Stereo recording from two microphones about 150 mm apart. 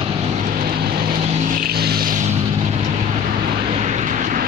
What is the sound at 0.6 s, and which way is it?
Vehicle, 75° right (ahead or behind).